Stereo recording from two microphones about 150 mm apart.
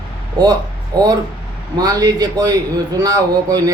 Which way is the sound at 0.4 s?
30° right (ahead or behind).